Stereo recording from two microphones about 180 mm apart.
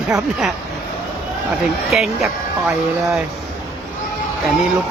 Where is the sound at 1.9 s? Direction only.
5° right (ahead or behind).